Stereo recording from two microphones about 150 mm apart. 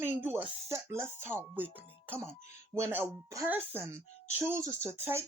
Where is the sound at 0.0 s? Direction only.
15° right (ahead or behind).